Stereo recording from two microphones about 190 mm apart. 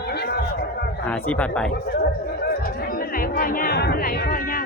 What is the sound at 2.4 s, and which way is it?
Chatter, 50° left (ahead or behind).